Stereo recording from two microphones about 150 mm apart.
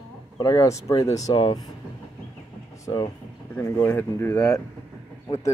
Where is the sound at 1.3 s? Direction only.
35° left (ahead or behind).